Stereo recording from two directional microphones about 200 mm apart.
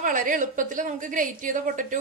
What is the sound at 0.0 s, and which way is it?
A woman's voice, 40° right (ahead or behind).